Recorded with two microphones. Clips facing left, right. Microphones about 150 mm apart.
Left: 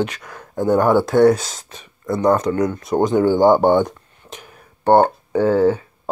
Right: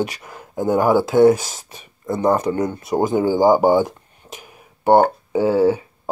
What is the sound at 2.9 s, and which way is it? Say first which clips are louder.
Speech: left 2 dB; 5° right (ahead or behind).